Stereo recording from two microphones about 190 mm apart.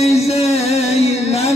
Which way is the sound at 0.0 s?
35° left (ahead or behind).